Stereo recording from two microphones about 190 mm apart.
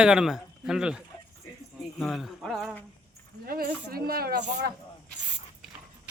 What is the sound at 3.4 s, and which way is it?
Speech, 50° right (ahead or behind).